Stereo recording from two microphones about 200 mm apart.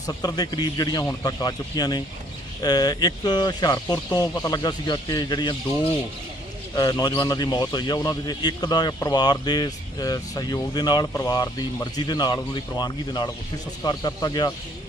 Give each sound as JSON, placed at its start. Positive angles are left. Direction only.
{"t": 0.1, "sound": "a man's voice", "side_deg": 20}
{"t": 6.7, "sound": "a man's voice", "side_deg": 20}